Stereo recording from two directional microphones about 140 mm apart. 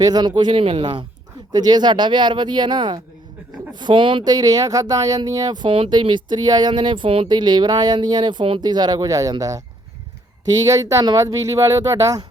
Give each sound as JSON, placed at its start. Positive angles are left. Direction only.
{"t": 0.0, "sound": "speech", "side_deg": -30}
{"t": 10.7, "sound": "speech", "side_deg": -25}